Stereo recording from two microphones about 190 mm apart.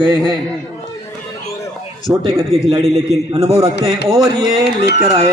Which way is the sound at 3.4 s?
15° right (ahead or behind).